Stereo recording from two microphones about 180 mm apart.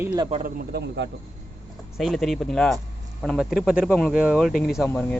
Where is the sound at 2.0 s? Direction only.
Centre (ahead or behind).